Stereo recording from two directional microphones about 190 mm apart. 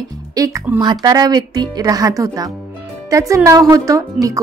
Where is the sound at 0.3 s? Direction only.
15° right (ahead or behind).